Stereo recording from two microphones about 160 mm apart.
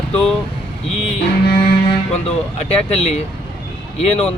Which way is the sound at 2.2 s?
40° left (ahead or behind).